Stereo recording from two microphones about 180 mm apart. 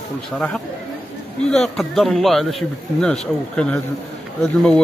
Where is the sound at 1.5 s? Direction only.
Centre (ahead or behind).